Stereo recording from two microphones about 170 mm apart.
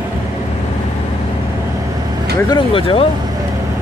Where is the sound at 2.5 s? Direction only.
30° left (ahead or behind).